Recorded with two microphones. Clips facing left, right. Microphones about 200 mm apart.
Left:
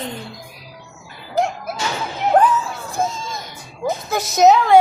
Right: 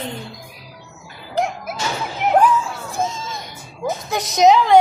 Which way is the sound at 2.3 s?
Centre (ahead or behind).